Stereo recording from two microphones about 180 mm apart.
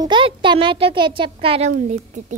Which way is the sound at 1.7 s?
45° right (ahead or behind).